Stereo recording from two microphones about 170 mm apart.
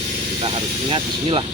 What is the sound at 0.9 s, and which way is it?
Speech, 30° right (ahead or behind).